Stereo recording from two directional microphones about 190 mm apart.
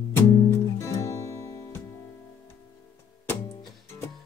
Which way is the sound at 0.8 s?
15° left (ahead or behind).